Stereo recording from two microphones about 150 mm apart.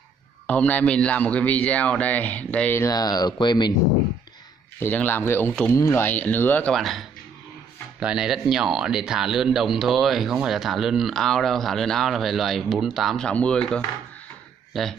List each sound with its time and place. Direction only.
0.5 s a man's voice: 10° left (ahead or behind)
2.8 s speech: 25° left (ahead or behind)
4.7 s a man's voice: 15° left (ahead or behind)